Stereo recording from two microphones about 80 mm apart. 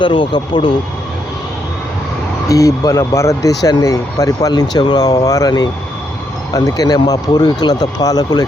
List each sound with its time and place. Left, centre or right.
0.0 s speech: left
2.5 s speech: left
6.7 s speech: left